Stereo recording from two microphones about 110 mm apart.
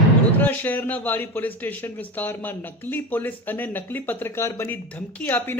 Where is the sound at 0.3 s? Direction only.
15° left (ahead or behind).